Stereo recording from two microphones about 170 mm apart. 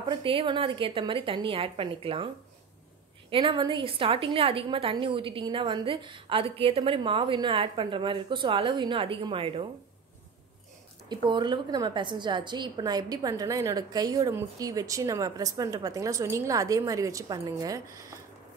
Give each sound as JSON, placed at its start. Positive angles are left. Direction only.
{"t": 0.1, "sound": "a woman's voice", "side_deg": -30}
{"t": 11.1, "sound": "a woman's voice", "side_deg": -25}